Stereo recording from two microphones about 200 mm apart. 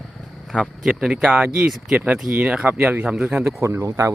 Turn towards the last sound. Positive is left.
turn(degrees=-15)  # may be behind; listen again after turning